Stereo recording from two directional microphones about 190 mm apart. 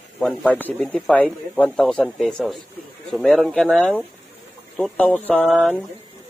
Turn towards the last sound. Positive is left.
turn(degrees=-5)  # may be behind; listen again after turning